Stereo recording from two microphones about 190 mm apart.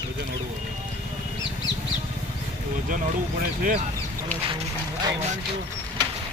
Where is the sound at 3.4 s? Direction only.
45° right (ahead or behind).